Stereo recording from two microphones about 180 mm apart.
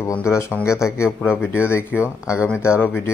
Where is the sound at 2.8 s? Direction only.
10° left (ahead or behind).